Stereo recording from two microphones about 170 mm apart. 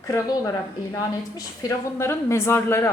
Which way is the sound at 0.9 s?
20° left (ahead or behind).